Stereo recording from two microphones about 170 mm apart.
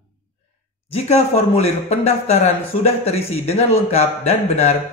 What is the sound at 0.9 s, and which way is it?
A man's voice, 40° left (ahead or behind).